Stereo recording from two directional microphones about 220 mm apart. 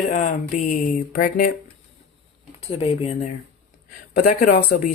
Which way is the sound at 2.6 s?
30° left (ahead or behind).